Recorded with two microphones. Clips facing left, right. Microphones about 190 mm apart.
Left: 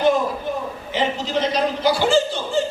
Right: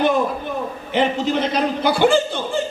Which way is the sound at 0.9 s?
55° right (ahead or behind).